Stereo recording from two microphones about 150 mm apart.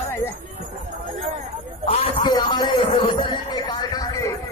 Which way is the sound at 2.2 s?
30° left (ahead or behind).